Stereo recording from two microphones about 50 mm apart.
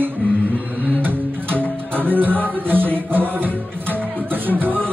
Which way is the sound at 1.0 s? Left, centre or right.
Right.